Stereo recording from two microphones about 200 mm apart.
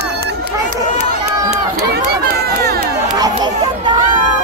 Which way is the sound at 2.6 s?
50° right (ahead or behind).